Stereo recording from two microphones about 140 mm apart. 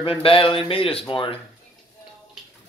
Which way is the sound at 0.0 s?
40° left (ahead or behind).